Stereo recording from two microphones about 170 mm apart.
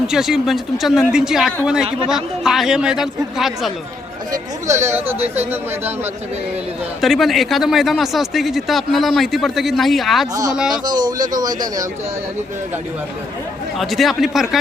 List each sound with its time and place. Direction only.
0.1 s speech: 5° right (ahead or behind)
4.7 s speech: 15° right (ahead or behind)
7.0 s speech: centre (ahead or behind)
10.8 s a man's voice: 25° right (ahead or behind)
13.7 s speech: centre (ahead or behind)